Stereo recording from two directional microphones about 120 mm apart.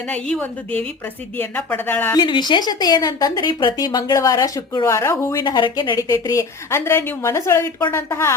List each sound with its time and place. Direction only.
0.1 s speech: 10° left (ahead or behind)
2.1 s a woman's voice: 40° left (ahead or behind); by 5.4 s 25° left (ahead or behind)
5.4 s a woman's voice: 35° left (ahead or behind)
6.0 s a woman's voice: 25° left (ahead or behind)